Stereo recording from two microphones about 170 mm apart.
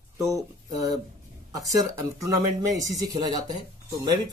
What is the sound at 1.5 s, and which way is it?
Speech, 20° right (ahead or behind).